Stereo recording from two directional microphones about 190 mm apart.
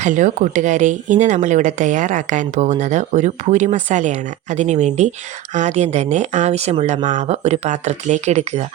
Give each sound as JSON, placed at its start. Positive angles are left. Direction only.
{"t": 0.0, "sound": "speech", "side_deg": -40}